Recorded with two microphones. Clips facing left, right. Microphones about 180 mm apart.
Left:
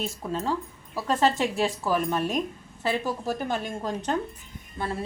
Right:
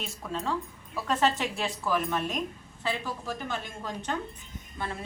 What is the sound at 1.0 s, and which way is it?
A woman's voice, 40° left (ahead or behind).